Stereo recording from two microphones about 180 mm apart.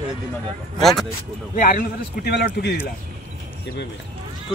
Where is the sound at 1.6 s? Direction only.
50° left (ahead or behind).